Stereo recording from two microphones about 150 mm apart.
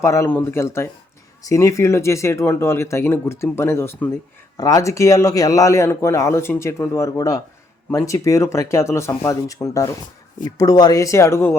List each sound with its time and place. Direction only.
0.0 s a man's voice: 20° left (ahead or behind)